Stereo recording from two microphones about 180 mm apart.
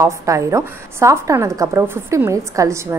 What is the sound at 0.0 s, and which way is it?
A woman's voice, 15° right (ahead or behind).